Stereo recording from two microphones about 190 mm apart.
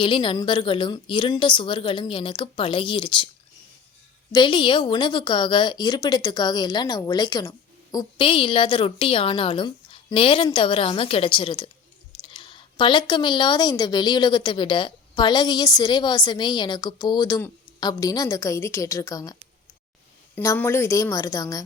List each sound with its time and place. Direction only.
0.0 s a woman's voice: 25° left (ahead or behind)
4.3 s a woman's voice: 25° left (ahead or behind)